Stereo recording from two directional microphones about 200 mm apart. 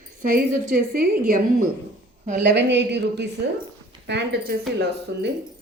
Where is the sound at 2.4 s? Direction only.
60° right (ahead or behind).